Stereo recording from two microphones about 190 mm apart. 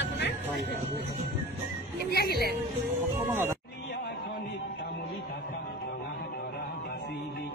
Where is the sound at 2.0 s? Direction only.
55° left (ahead or behind).